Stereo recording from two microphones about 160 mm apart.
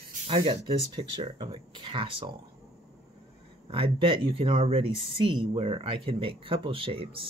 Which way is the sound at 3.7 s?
35° right (ahead or behind).